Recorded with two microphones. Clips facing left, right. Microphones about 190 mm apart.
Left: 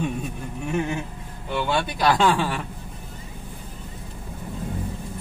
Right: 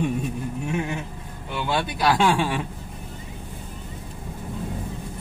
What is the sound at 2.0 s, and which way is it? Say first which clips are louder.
Speech: even; 10° right (ahead or behind).